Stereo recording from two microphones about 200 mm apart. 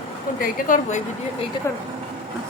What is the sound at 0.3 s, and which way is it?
Speech, 40° left (ahead or behind).